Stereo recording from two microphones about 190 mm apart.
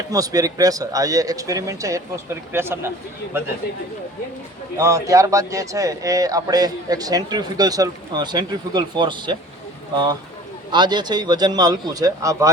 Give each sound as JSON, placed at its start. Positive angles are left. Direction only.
{"t": 0.1, "sound": "speech", "side_deg": -20}
{"t": 4.8, "sound": "speech", "side_deg": -15}